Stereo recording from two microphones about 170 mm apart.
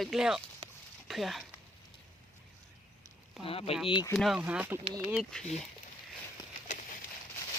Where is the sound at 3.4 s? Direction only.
35° left (ahead or behind).